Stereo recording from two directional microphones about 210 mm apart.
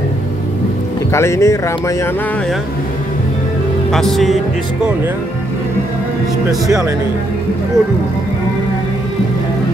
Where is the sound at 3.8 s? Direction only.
Centre (ahead or behind).